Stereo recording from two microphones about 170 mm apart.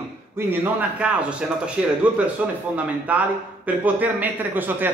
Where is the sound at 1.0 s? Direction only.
5° right (ahead or behind).